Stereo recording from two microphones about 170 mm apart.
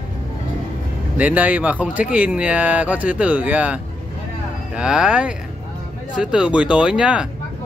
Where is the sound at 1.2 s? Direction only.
10° right (ahead or behind).